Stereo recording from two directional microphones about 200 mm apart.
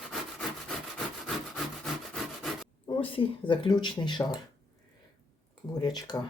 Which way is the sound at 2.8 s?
25° left (ahead or behind).